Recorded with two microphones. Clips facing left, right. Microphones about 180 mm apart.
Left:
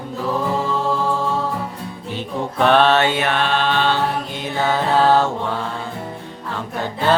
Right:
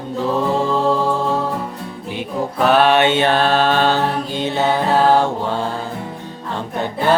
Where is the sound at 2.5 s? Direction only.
5° right (ahead or behind); by 4.0 s 40° right (ahead or behind).